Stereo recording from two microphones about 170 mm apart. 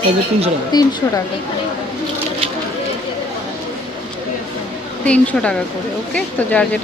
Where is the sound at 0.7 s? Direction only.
25° left (ahead or behind).